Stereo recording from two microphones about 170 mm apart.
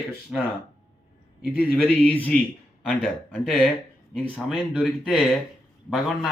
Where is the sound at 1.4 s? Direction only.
5° left (ahead or behind).